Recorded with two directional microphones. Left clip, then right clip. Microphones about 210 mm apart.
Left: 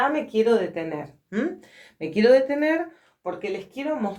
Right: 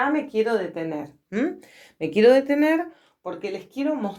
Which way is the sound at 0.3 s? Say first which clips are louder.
Left 2 dB; 30° right (ahead or behind).